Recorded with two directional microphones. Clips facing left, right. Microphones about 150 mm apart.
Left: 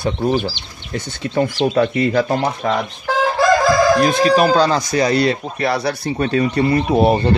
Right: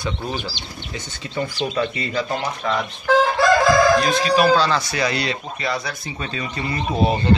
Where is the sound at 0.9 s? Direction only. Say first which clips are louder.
Left 9 dB; 60° left (ahead or behind).